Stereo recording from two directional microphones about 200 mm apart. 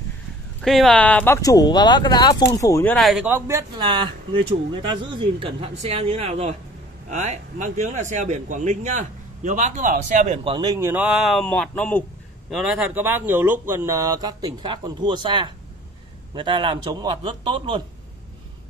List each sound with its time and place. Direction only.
0.6 s speech: centre (ahead or behind)
3.3 s speech: 10° right (ahead or behind)
5.1 s a man's voice: 25° right (ahead or behind)